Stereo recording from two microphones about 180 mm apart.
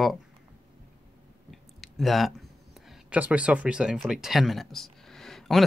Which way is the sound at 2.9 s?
5° right (ahead or behind).